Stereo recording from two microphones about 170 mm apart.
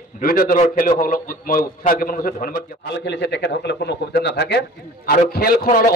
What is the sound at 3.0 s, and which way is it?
A man's voice, 90° left.